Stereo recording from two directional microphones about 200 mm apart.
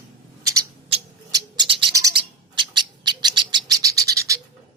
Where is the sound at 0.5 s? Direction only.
25° right (ahead or behind).